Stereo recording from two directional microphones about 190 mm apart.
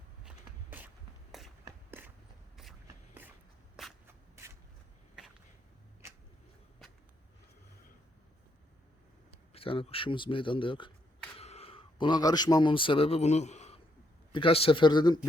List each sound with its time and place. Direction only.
0.3 s walk: 10° right (ahead or behind)
1.6 s a sound: 10° right (ahead or behind)
4.0 s shuffle: 15° right (ahead or behind)
9.5 s speech: 30° left (ahead or behind)